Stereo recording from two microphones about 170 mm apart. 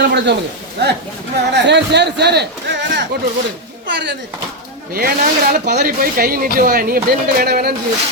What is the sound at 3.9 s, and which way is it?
Speech, 90° right.